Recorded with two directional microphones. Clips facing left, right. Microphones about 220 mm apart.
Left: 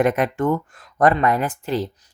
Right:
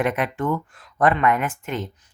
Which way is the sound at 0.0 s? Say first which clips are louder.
Left 4 dB; 45° left (ahead or behind).